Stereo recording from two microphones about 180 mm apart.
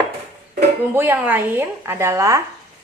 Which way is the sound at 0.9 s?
10° right (ahead or behind).